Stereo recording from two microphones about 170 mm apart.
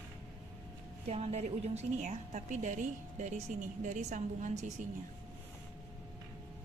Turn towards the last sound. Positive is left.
turn(degrees=-45)  # may be behind; listen again after turning